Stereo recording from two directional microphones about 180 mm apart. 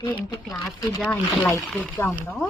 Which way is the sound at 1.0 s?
10° left (ahead or behind).